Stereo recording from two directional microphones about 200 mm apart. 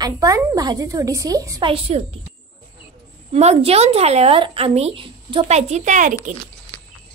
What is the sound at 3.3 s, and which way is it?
Speech, 30° right (ahead or behind).